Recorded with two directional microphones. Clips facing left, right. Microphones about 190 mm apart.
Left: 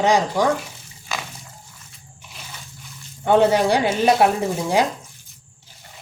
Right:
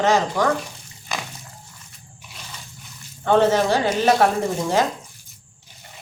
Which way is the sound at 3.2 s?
15° left (ahead or behind).